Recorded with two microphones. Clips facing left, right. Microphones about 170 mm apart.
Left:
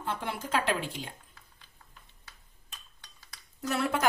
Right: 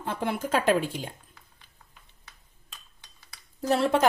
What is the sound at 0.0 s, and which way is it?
A woman's voice, 50° right (ahead or behind).